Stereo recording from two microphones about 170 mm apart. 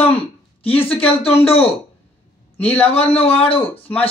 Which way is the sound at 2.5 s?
10° left (ahead or behind).